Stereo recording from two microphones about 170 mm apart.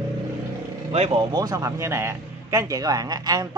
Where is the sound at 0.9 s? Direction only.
35° right (ahead or behind).